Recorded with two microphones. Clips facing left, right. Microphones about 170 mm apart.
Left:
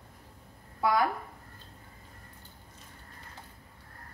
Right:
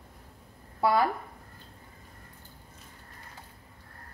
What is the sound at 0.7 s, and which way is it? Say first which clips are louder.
Speech: right 2 dB; 30° right (ahead or behind).